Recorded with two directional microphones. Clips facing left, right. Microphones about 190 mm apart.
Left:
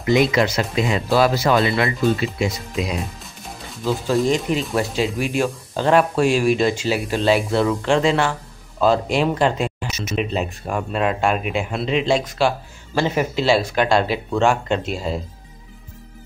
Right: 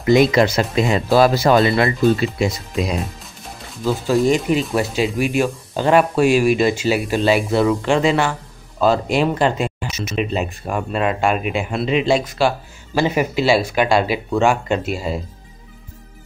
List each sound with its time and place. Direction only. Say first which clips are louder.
0.1 s speech: right 3 dB; 40° right (ahead or behind)
3.2 s speech: even; centre (ahead or behind)